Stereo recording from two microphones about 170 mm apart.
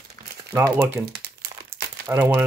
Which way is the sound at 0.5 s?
15° right (ahead or behind).